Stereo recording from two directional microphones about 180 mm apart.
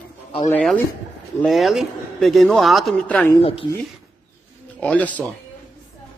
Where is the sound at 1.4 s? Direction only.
Centre (ahead or behind).